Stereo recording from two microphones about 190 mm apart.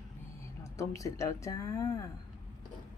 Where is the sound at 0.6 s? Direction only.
15° left (ahead or behind).